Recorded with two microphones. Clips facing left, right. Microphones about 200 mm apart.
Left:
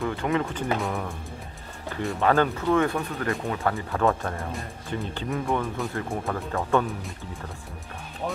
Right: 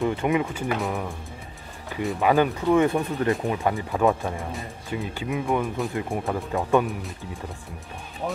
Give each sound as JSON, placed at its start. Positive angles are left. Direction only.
{"t": 0.0, "sound": "speech", "side_deg": -15}
{"t": 2.1, "sound": "speech", "side_deg": -15}
{"t": 4.4, "sound": "speech", "side_deg": 0}